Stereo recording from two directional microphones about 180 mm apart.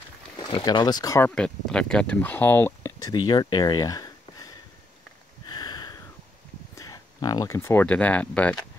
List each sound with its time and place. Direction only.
0.4 s speech: 20° left (ahead or behind)
1.3 s speech: 5° left (ahead or behind); by 4.6 s 20° left (ahead or behind)
5.5 s a sound: 25° left (ahead or behind)
6.8 s speech: 20° left (ahead or behind)